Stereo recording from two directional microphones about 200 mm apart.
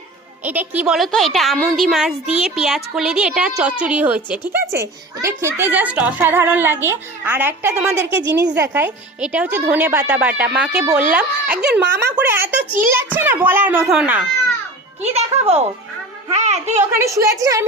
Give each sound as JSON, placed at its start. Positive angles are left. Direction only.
{"t": 0.4, "sound": "a woman's voice", "side_deg": -10}
{"t": 11.8, "sound": "speech", "side_deg": -55}
{"t": 12.1, "sound": "a child's voice", "side_deg": -10}
{"t": 15.0, "sound": "speech", "side_deg": -30}
{"t": 16.9, "sound": "a child's voice", "side_deg": -15}